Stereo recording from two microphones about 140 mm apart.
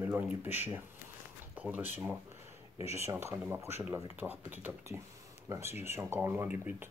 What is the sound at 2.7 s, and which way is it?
Speech, 50° left (ahead or behind).